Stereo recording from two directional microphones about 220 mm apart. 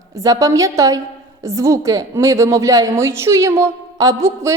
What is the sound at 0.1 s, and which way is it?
A woman's voice, 15° right (ahead or behind).